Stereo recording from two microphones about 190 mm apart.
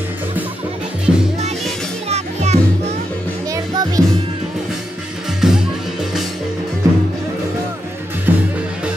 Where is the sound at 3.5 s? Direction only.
15° right (ahead or behind).